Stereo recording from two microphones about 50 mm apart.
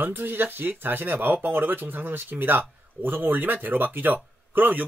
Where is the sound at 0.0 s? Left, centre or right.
Right.